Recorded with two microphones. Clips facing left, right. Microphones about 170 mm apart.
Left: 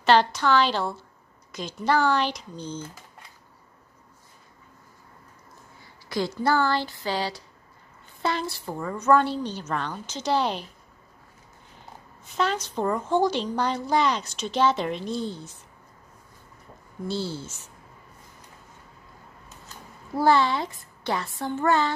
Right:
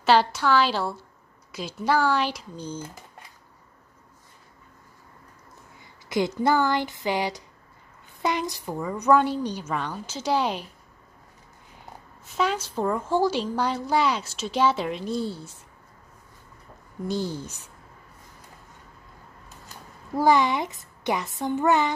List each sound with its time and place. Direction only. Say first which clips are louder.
0.0 s a woman's voice: even; 5° right (ahead or behind)
6.0 s a woman's voice: right 2 dB; 20° right (ahead or behind)
12.3 s a woman's voice: right 1 dB; 10° right (ahead or behind)
17.1 s a woman's voice: right 2 dB; 15° right (ahead or behind)
20.2 s a woman's voice: right 1 dB; 15° right (ahead or behind)